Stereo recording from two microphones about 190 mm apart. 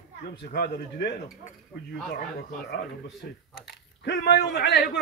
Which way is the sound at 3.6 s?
55° left (ahead or behind).